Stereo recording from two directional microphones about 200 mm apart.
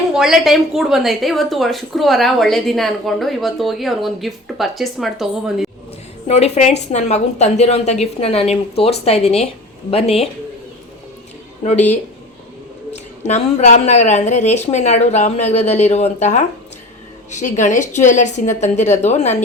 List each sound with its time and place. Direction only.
0.1 s a woman's voice: centre (ahead or behind)
6.2 s speech: 30° left (ahead or behind)
11.6 s speech: 35° left (ahead or behind)
13.2 s speech: 35° left (ahead or behind)